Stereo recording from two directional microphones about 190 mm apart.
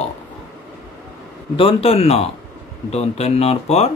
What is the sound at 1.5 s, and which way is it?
Speech, 30° left (ahead or behind).